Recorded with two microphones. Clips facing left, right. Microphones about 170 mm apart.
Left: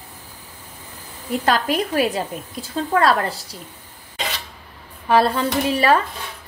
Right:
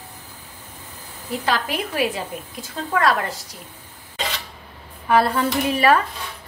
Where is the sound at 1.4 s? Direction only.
40° left (ahead or behind).